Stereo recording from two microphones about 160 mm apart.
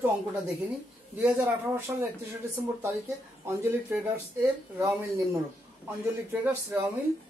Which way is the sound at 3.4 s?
15° right (ahead or behind).